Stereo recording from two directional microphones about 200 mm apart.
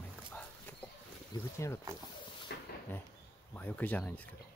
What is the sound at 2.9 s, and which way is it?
Speech, 10° left (ahead or behind).